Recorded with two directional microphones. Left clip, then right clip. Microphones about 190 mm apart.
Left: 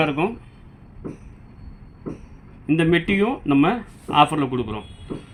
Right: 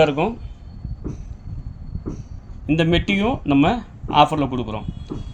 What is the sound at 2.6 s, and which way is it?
Speech, 20° right (ahead or behind).